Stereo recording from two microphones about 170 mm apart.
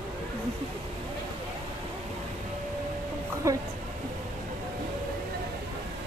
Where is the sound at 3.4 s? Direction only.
20° right (ahead or behind).